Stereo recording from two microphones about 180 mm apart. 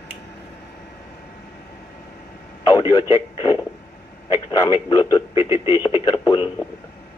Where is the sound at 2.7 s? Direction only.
20° left (ahead or behind).